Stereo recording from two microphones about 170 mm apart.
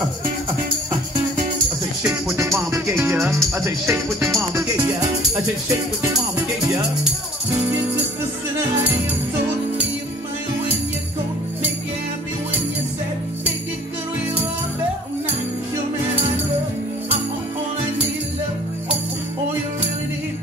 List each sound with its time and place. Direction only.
2.3 s music: 15° right (ahead or behind)
3.5 s speech: 15° right (ahead or behind)
7.5 s music: 15° right (ahead or behind)